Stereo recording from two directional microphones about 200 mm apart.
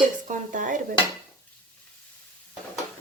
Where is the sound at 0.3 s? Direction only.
40° right (ahead or behind).